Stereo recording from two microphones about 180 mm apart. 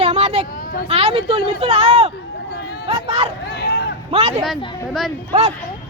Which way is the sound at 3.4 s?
65° left (ahead or behind).